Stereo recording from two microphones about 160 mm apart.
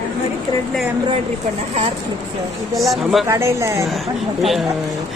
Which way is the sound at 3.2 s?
15° right (ahead or behind).